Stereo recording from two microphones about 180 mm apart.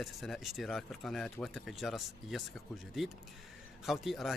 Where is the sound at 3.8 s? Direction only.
Centre (ahead or behind).